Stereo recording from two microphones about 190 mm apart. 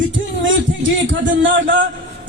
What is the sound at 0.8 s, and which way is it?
Speech, 85° right.